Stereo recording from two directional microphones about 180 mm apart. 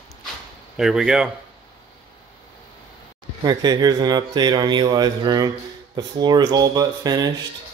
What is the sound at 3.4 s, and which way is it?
Speech, 20° right (ahead or behind).